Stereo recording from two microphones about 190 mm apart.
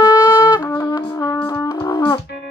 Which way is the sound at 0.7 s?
15° left (ahead or behind).